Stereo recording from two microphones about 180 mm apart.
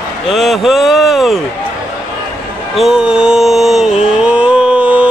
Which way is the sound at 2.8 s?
5° right (ahead or behind).